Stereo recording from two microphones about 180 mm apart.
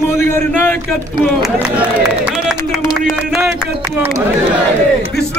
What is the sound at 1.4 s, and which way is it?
Speech, 5° right (ahead or behind).